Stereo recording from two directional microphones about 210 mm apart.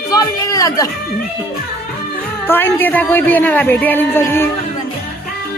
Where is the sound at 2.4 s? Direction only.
10° left (ahead or behind).